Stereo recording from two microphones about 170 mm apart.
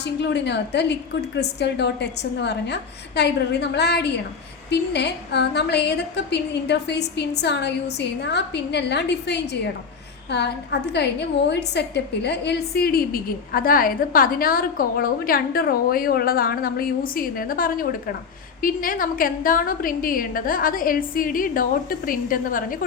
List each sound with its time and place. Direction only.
0.0 s a woman's voice: 85° left; by 22.8 s 55° left (ahead or behind)